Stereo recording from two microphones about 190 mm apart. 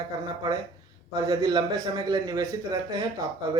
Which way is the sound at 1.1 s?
20° right (ahead or behind).